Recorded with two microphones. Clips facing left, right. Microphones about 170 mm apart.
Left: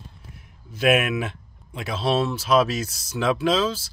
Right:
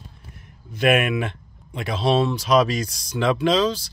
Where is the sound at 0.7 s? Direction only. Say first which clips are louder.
Right 1 dB; 5° left (ahead or behind).